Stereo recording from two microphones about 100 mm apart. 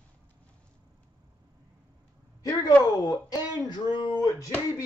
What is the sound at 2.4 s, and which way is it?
Speech, 40° left (ahead or behind).